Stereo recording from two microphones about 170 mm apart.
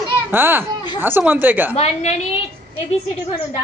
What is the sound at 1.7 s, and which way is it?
Speech, 40° left (ahead or behind).